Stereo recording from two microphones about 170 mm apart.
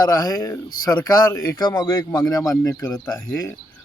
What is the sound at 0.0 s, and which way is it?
Speech, 20° left (ahead or behind).